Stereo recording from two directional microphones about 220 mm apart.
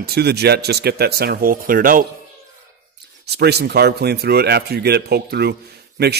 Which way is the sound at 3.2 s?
50° right (ahead or behind).